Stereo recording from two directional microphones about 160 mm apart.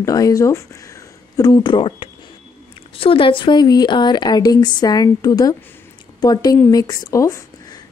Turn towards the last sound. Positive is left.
turn(degrees=20)  # may be behind; listen again after turning